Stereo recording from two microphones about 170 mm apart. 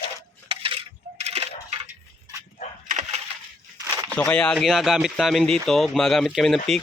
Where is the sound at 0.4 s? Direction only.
30° right (ahead or behind).